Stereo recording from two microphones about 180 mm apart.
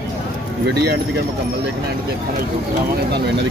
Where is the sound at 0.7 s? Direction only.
65° right (ahead or behind).